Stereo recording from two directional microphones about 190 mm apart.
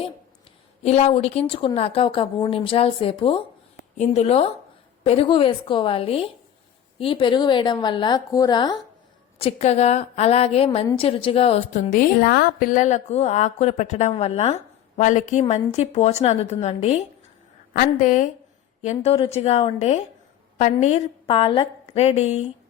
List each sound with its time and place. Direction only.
0.8 s a woman's voice: 35° left (ahead or behind)
9.4 s a woman's voice: 35° left (ahead or behind)